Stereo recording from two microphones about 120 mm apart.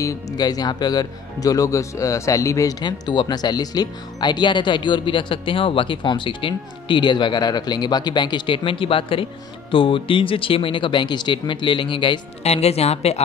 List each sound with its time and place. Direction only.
0.0 s speech: 30° left (ahead or behind)
12.4 s a woman's voice: 60° left (ahead or behind)